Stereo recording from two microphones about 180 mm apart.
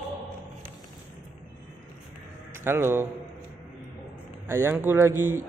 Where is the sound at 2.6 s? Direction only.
15° right (ahead or behind).